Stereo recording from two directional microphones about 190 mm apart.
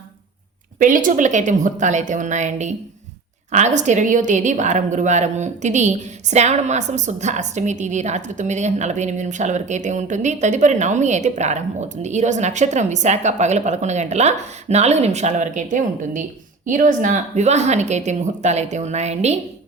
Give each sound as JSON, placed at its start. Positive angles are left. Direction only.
{"t": 0.8, "sound": "a woman's voice", "side_deg": -40}